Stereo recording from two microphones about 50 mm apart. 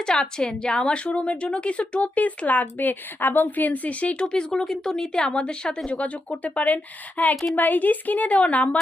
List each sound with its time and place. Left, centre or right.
0.0 s a woman's voice: centre